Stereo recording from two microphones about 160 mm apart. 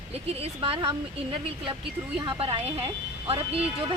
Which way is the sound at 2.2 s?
35° right (ahead or behind).